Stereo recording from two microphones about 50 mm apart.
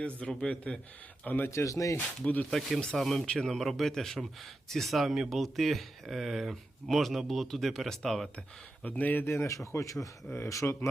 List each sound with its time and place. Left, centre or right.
0.0 s a man's voice: left
1.2 s speech: left
1.5 s speech: left
2.0 s a man's voice: left
2.4 s speech: centre
8.8 s speech: left
9.2 s speech: left
9.7 s speech: left
10.3 s speech: left